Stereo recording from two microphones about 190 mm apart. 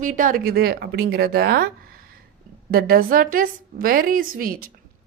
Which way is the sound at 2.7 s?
50° right (ahead or behind).